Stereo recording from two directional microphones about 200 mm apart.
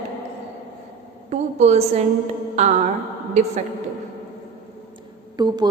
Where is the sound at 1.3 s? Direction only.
35° right (ahead or behind).